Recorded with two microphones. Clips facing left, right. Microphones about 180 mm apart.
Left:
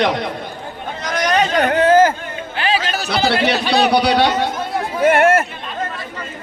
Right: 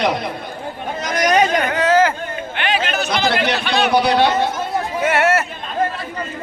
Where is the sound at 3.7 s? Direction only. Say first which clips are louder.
Left 3 dB; 35° left (ahead or behind).